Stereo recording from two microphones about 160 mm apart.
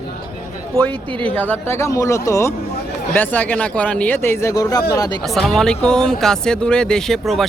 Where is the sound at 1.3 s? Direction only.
10° left (ahead or behind).